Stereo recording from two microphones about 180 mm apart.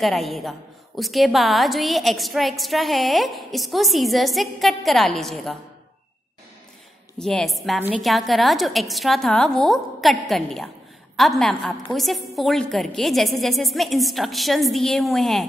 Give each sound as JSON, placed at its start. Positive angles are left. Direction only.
{"t": 0.0, "sound": "a woman's voice", "side_deg": 0}
{"t": 7.2, "sound": "a woman's voice", "side_deg": 5}